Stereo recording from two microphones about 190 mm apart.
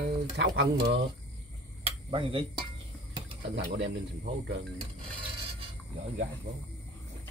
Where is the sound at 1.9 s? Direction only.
30° right (ahead or behind).